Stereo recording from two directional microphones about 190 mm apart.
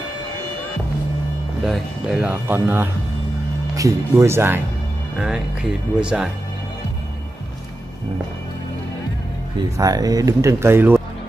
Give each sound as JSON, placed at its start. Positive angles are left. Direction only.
{"t": 1.6, "sound": "speech", "side_deg": 0}
{"t": 9.8, "sound": "speech", "side_deg": -20}